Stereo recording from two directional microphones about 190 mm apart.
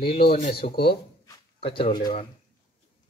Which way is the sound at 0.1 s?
35° left (ahead or behind).